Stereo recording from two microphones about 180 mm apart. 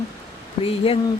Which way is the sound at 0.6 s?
30° left (ahead or behind).